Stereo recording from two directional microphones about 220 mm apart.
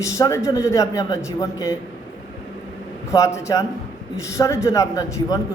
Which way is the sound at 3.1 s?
15° left (ahead or behind).